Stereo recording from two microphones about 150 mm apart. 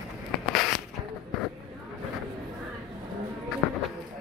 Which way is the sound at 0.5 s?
Centre (ahead or behind).